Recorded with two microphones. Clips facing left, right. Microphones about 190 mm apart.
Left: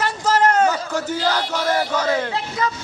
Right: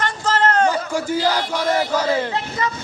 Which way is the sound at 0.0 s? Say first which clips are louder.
Left 2 dB; 10° left (ahead or behind).